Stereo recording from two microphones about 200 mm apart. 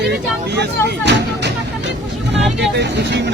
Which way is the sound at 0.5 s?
55° right (ahead or behind).